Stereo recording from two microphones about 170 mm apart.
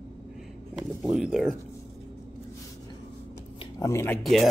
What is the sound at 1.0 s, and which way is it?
Speech, 5° right (ahead or behind).